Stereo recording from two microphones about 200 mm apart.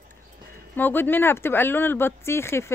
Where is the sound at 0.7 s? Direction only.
10° left (ahead or behind).